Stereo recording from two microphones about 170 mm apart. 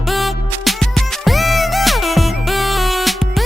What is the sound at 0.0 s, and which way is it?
Music, centre (ahead or behind).